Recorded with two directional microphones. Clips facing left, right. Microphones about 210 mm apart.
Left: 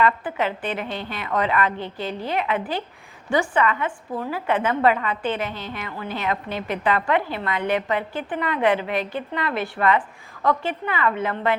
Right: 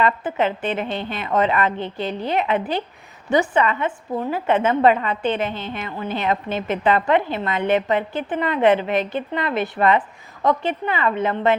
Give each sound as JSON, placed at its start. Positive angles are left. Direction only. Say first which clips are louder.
{"t": 0.0, "sound": "a woman's voice", "louder": "right 2 dB", "side_deg": -25}